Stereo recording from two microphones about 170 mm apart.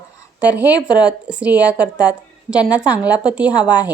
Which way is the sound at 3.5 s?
25° left (ahead or behind).